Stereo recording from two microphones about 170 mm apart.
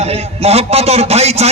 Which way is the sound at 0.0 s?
35° right (ahead or behind).